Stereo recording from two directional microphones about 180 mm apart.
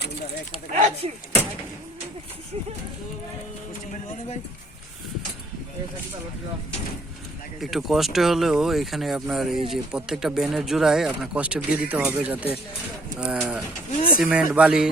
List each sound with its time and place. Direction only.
0.7 s speech: 40° right (ahead or behind)
7.6 s speech: centre (ahead or behind)